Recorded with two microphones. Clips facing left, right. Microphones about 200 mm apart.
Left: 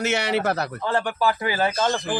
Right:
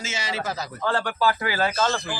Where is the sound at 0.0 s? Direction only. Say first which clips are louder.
Left 8 dB; 65° left (ahead or behind).